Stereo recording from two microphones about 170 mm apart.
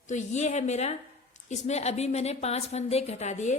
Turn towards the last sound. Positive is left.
turn(degrees=45)  # may be behind; listen again after turning